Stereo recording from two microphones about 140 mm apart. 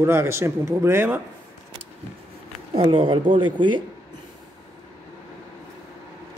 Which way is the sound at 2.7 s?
40° right (ahead or behind).